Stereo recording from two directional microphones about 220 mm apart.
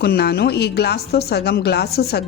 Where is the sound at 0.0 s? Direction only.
45° left (ahead or behind).